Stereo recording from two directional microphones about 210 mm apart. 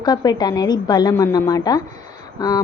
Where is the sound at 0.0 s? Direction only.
20° left (ahead or behind).